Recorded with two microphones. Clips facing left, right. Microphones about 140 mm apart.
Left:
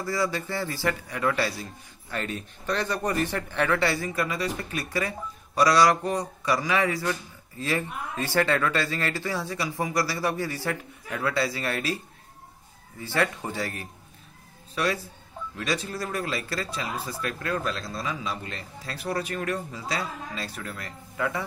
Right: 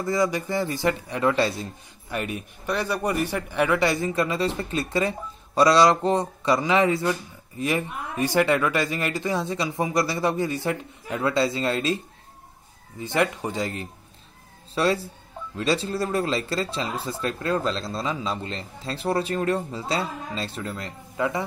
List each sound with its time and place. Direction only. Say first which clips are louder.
0.0 s speech: right 4 dB; 20° right (ahead or behind)
13.0 s speech: right 3 dB; 20° right (ahead or behind)